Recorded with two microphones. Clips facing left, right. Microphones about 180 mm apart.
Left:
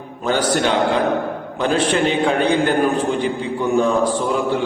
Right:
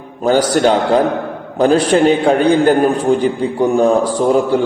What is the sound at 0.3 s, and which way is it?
A man's voice, 40° right (ahead or behind).